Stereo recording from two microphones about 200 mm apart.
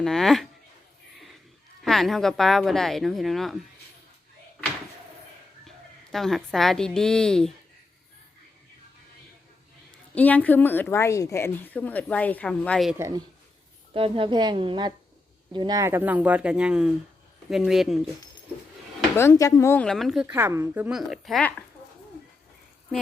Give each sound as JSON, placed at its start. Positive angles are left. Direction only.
{"t": 0.0, "sound": "a woman's voice", "side_deg": 0}
{"t": 1.8, "sound": "a woman's voice", "side_deg": 0}
{"t": 5.6, "sound": "a woman's voice", "side_deg": 0}
{"t": 10.2, "sound": "a woman's voice", "side_deg": 10}
{"t": 13.0, "sound": "a woman's voice", "side_deg": -20}
{"t": 19.1, "sound": "a woman's voice", "side_deg": 15}